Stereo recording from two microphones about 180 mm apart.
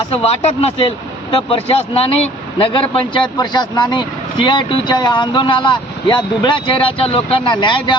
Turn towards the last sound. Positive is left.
turn(degrees=25)  # may be behind; listen again after turning